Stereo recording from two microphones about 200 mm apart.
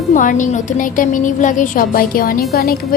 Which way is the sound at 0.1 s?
40° left (ahead or behind).